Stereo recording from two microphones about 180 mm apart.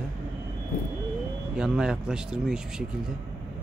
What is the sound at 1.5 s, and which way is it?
Speech, 5° right (ahead or behind).